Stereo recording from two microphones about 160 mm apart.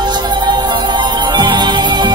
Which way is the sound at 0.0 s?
30° right (ahead or behind).